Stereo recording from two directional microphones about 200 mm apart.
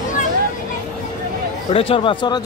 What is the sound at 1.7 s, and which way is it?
Speech, 30° left (ahead or behind).